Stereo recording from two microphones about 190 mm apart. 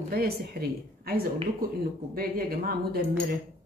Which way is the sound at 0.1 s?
55° right (ahead or behind).